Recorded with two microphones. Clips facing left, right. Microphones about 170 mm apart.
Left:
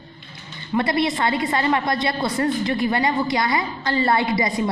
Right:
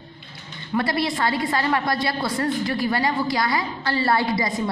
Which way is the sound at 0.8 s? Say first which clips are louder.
Left 3 dB; centre (ahead or behind).